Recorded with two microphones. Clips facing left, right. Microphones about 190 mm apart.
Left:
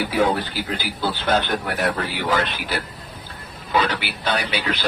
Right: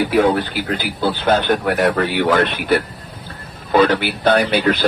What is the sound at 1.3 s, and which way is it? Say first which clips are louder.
Speech: right 6 dB; 60° right (ahead or behind).